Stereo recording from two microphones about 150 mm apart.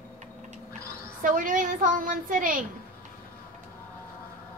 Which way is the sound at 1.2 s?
60° right (ahead or behind).